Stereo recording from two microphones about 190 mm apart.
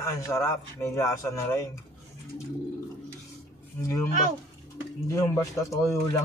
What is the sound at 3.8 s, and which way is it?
Speech, 15° left (ahead or behind).